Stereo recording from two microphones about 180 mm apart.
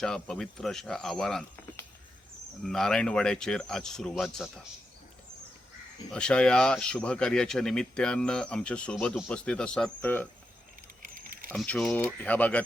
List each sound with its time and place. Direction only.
0.0 s speech: 5° left (ahead or behind)
2.6 s speech: 5° left (ahead or behind)
6.1 s speech: 5° left (ahead or behind)
11.0 s rodents: 50° right (ahead or behind)
11.5 s speech: 5° left (ahead or behind)